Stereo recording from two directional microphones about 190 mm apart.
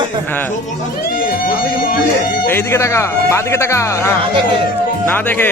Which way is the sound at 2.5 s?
15° left (ahead or behind).